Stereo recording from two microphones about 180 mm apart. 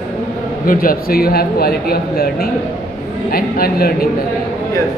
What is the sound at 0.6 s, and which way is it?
Speech, 50° left (ahead or behind).